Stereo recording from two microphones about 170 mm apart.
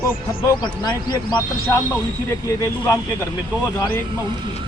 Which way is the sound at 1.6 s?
15° left (ahead or behind).